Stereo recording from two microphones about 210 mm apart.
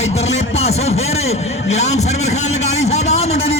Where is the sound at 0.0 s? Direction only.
30° left (ahead or behind).